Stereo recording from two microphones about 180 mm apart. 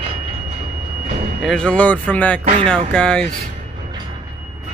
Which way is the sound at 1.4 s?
5° left (ahead or behind).